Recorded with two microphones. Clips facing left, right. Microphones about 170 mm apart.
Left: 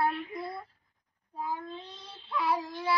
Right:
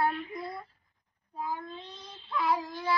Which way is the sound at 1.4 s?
10° left (ahead or behind).